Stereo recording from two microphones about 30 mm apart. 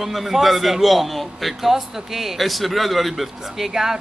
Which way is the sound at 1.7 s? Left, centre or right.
Centre.